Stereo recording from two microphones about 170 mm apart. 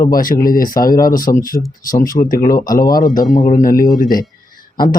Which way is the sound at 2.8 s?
20° left (ahead or behind).